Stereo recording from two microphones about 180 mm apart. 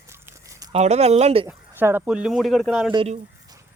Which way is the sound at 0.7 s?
35° right (ahead or behind).